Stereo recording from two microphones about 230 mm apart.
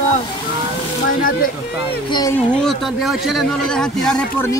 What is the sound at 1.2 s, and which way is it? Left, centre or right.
Speech, left.